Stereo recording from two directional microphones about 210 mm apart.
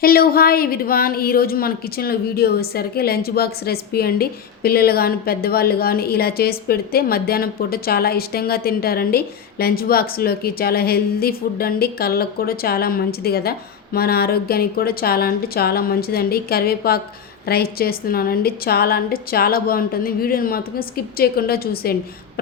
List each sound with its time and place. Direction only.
0.0 s a woman's voice: 45° left (ahead or behind)